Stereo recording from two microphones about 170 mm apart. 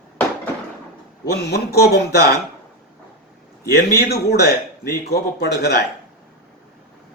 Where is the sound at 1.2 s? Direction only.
75° left (ahead or behind).